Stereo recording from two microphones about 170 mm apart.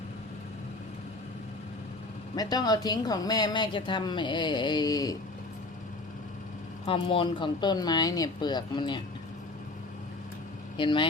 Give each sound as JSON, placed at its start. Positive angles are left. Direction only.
{"t": 2.3, "sound": "speech", "side_deg": 25}
{"t": 6.8, "sound": "speech", "side_deg": 30}
{"t": 10.8, "sound": "speech", "side_deg": 30}